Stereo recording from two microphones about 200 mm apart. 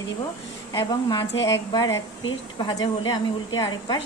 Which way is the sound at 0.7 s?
20° left (ahead or behind).